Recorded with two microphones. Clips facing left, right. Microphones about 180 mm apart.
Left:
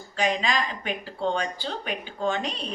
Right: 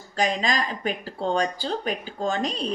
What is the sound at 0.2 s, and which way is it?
Speech, 40° right (ahead or behind).